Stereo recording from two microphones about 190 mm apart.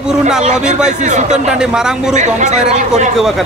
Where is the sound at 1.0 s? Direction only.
40° right (ahead or behind).